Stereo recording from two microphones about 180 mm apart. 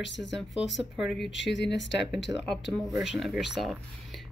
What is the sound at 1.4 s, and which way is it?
Speech, 80° left.